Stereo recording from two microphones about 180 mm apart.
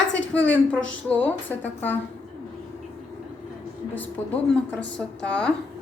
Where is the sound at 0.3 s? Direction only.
5° left (ahead or behind).